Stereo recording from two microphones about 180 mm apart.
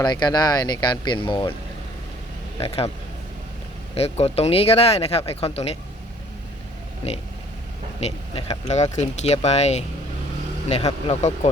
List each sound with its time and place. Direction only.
0.0 s speech: 25° left (ahead or behind)
2.6 s speech: 35° left (ahead or behind)
3.9 s speech: 35° left (ahead or behind)
8.0 s speech: 35° left (ahead or behind)
11.1 s speech: 40° left (ahead or behind)